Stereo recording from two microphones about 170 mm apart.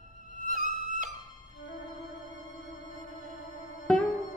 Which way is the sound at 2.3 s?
45° right (ahead or behind).